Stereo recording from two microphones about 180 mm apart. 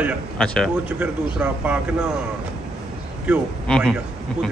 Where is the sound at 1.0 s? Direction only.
5° right (ahead or behind).